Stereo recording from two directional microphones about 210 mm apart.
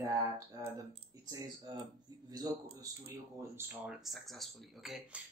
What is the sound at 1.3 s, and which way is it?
Speech, 20° right (ahead or behind).